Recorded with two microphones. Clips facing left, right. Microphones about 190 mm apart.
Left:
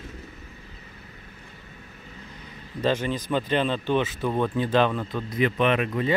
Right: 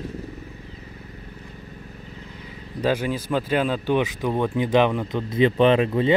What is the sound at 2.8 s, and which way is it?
Speech, 10° right (ahead or behind).